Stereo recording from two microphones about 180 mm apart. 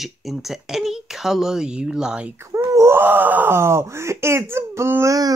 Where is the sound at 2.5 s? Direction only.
15° right (ahead or behind).